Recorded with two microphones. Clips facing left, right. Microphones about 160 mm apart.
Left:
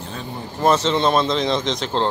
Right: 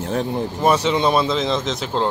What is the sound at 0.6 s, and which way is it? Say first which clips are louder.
Speech: left 1 dB; 10° right (ahead or behind).